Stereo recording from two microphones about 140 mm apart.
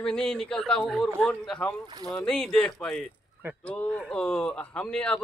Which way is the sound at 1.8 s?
30° right (ahead or behind).